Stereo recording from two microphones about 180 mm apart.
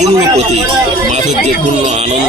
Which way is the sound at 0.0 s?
40° right (ahead or behind).